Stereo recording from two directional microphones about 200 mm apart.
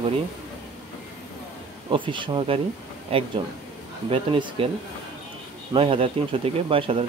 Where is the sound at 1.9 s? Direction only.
25° right (ahead or behind).